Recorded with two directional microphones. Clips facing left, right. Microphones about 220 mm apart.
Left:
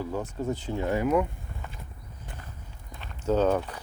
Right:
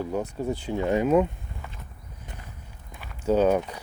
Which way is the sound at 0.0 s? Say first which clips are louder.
Right 2 dB; 15° right (ahead or behind).